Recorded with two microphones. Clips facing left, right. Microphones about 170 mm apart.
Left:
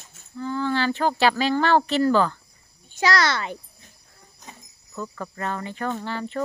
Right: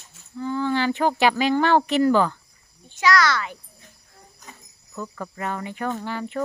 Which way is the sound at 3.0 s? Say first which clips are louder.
Right 2 dB; 30° left (ahead or behind).